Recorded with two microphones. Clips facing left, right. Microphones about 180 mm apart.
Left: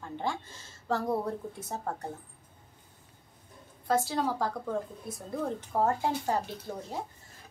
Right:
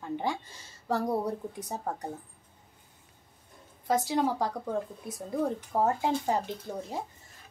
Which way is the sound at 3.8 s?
15° right (ahead or behind).